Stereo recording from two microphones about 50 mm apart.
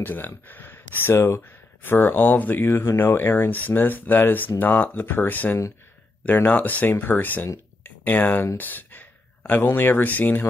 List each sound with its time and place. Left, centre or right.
0.0 s speech: left
2.6 s speech: left
7.8 s a sound: left
8.5 s speech: left